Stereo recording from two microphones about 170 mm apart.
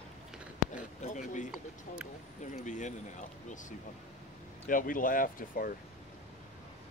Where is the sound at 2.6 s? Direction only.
45° left (ahead or behind).